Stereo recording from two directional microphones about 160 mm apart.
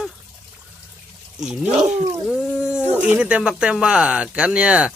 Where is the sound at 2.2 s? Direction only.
5° right (ahead or behind).